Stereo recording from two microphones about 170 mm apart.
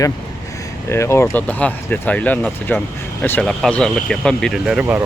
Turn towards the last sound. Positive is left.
turn(degrees=-5)  # may be behind; listen again after turning